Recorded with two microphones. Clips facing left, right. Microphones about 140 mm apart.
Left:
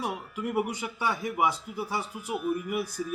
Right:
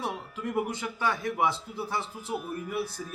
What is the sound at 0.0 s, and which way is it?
A man's voice, 10° left (ahead or behind).